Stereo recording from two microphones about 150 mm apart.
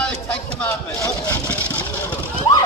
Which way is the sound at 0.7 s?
20° left (ahead or behind).